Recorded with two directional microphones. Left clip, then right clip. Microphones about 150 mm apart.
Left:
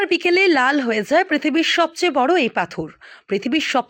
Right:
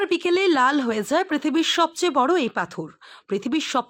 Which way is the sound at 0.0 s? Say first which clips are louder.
Left 4 dB; centre (ahead or behind).